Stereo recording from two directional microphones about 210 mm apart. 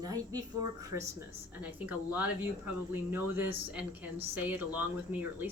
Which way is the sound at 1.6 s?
10° right (ahead or behind).